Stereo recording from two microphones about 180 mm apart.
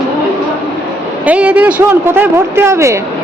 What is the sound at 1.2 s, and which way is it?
Speech, 5° right (ahead or behind).